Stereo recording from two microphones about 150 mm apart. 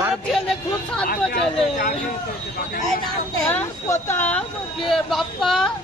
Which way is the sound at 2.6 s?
75° left (ahead or behind).